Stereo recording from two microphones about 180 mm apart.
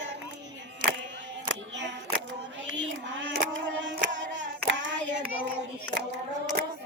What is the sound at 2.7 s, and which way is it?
Child singing, 90° right.